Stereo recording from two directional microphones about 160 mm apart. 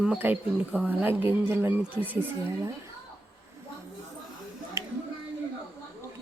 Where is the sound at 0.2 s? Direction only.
10° right (ahead or behind).